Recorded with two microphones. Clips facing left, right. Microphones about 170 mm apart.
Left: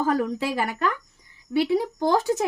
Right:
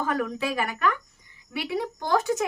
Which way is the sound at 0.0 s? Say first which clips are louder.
Left 4 dB; 30° left (ahead or behind).